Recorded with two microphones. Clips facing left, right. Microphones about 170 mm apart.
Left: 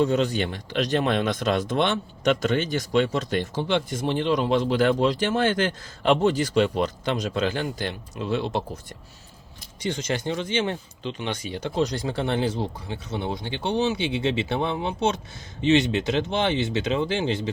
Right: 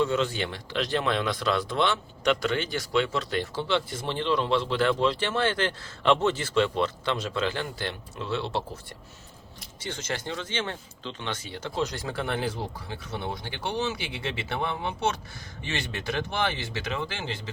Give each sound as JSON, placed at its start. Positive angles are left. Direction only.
{"t": 0.8, "sound": "speech", "side_deg": 50}
{"t": 1.2, "sound": "speech", "side_deg": 20}
{"t": 1.8, "sound": "speech", "side_deg": 50}
{"t": 2.5, "sound": "speech", "side_deg": 20}
{"t": 9.8, "sound": "speech", "side_deg": 15}